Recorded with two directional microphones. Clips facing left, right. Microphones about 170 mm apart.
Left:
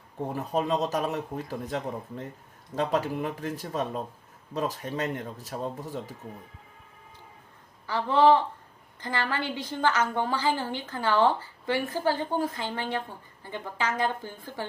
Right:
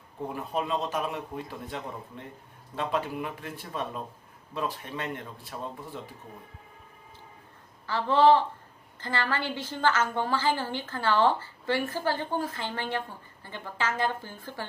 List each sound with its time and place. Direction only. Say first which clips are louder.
0.3 s speech: left 4 dB; 40° left (ahead or behind)
7.9 s a woman's voice: even; 15° left (ahead or behind)